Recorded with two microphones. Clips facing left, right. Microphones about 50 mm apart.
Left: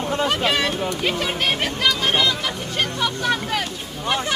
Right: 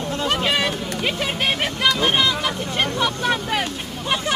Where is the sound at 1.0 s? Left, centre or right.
Centre.